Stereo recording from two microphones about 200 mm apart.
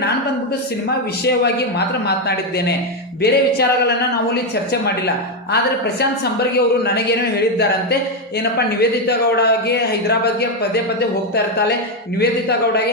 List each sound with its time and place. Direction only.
2.0 s speech: 55° left (ahead or behind)
6.0 s speech: 55° left (ahead or behind)
12.2 s speech: 55° left (ahead or behind)